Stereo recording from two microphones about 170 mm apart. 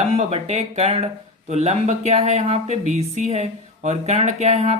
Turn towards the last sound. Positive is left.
turn(degrees=-40)  # may be behind; listen again after turning